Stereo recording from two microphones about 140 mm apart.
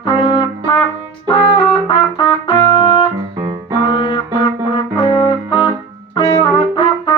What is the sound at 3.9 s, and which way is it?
Music, 40° left (ahead or behind).